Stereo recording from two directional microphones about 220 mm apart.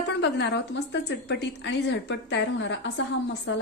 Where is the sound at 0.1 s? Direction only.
50° left (ahead or behind).